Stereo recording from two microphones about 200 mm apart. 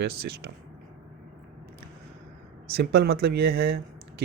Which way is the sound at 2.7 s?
50° right (ahead or behind).